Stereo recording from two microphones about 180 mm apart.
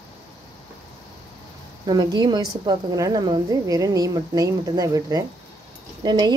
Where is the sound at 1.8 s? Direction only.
20° right (ahead or behind).